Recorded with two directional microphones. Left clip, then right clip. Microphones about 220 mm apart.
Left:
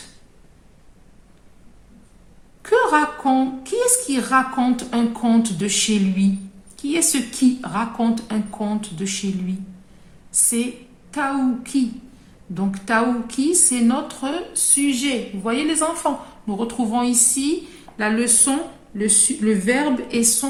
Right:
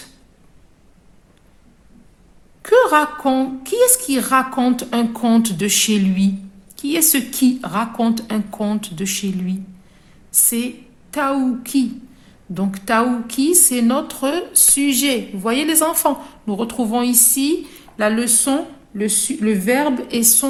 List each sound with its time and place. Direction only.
2.6 s a woman's voice: 40° right (ahead or behind)
11.1 s a woman's voice: 40° right (ahead or behind)